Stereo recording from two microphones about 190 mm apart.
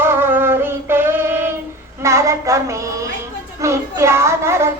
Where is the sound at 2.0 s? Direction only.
15° right (ahead or behind).